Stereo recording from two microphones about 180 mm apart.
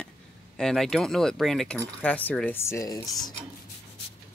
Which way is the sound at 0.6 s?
Centre (ahead or behind).